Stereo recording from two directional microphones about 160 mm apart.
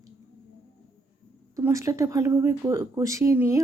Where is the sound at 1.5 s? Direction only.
20° right (ahead or behind).